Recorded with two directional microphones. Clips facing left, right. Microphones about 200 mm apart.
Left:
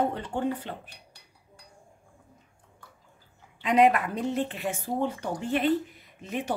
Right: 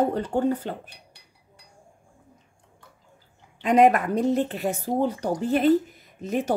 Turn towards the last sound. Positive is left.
turn(degrees=-40)  # may be behind; listen again after turning